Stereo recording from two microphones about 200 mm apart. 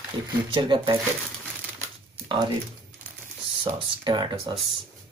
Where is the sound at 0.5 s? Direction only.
25° right (ahead or behind).